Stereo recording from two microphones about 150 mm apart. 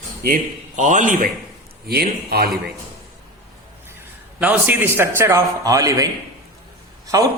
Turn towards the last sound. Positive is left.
turn(degrees=-25)  # may be behind; listen again after turning